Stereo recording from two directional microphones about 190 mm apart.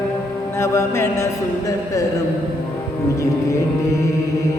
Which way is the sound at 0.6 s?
15° left (ahead or behind).